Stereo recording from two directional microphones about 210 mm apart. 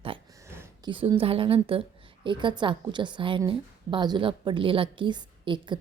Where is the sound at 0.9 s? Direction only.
25° right (ahead or behind).